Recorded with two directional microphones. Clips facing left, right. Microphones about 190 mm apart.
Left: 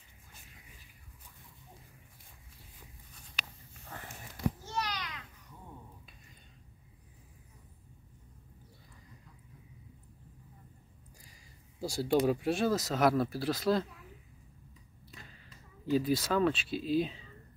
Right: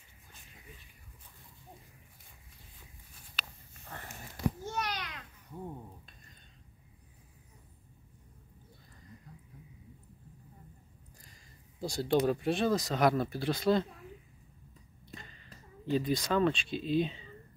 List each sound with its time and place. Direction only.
4.6 s a sound: 50° right (ahead or behind)
11.2 s speech: 10° left (ahead or behind)
15.1 s speech: 5° left (ahead or behind)